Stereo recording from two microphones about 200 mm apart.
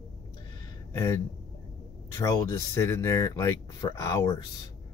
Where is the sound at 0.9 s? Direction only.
20° left (ahead or behind).